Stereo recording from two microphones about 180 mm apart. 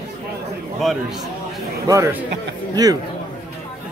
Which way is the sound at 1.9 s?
15° right (ahead or behind).